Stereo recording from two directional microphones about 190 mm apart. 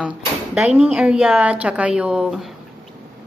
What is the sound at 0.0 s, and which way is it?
Speech, 5° right (ahead or behind).